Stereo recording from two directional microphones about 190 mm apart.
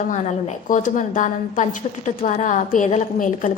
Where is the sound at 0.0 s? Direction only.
40° left (ahead or behind).